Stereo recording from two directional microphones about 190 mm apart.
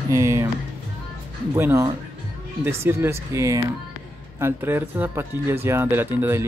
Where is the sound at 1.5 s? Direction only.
15° right (ahead or behind).